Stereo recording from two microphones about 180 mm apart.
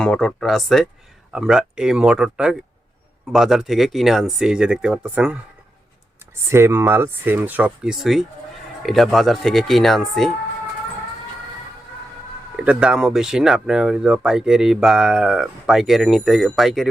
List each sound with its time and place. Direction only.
0.0 s speech: 5° left (ahead or behind)
6.5 s speech: 15° right (ahead or behind); by 10.3 s centre (ahead or behind)
12.5 s speech: 5° right (ahead or behind)